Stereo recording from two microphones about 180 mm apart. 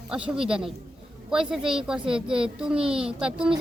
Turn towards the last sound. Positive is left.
turn(degrees=-5)  # may be behind; listen again after turning